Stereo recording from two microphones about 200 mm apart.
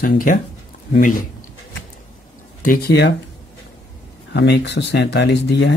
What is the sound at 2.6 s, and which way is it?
Speech, 45° left (ahead or behind).